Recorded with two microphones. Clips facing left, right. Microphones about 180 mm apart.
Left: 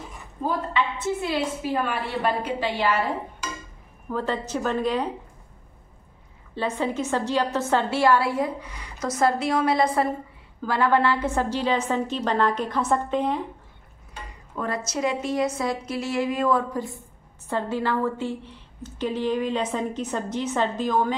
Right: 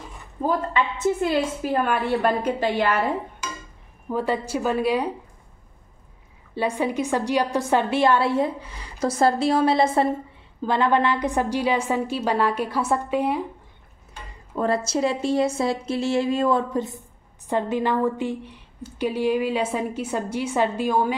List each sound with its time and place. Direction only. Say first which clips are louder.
0.5 s a woman's voice: right 2 dB; 45° right (ahead or behind)
4.1 s a woman's voice: right 3 dB; 10° right (ahead or behind)
6.5 s a woman's voice: right 2 dB; 10° right (ahead or behind)
14.5 s a woman's voice: right 6 dB; 30° right (ahead or behind); by 21.1 s 10° right (ahead or behind)